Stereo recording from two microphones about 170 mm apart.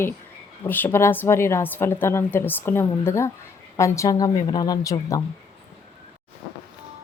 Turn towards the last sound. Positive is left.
turn(degrees=20)  # may be behind; listen again after turning